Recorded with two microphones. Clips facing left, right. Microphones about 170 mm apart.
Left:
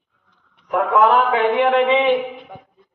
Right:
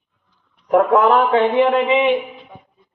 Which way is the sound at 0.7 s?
40° right (ahead or behind).